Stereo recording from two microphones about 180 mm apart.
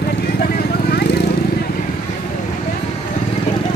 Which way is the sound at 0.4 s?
55° left (ahead or behind).